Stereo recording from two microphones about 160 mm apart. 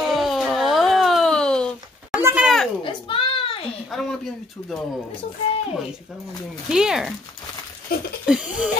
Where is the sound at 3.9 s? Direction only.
Centre (ahead or behind).